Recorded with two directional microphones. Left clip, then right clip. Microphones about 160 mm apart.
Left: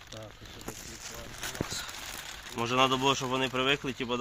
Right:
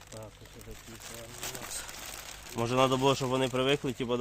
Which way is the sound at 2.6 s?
90° right.